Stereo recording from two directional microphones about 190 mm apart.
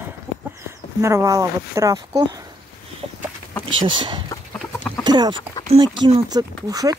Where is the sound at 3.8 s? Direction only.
25° right (ahead or behind).